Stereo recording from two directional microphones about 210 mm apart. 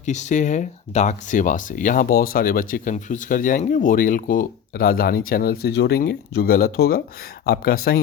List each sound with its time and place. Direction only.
0.0 s speech: 35° left (ahead or behind)